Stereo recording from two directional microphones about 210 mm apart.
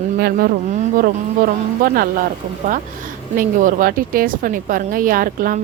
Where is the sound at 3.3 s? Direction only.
40° right (ahead or behind).